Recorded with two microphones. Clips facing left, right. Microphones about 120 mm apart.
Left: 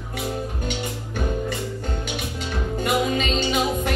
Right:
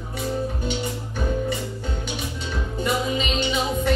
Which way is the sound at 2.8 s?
55° left (ahead or behind).